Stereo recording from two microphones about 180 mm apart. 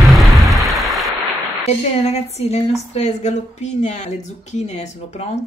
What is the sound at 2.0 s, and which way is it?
A woman's voice, 35° left (ahead or behind).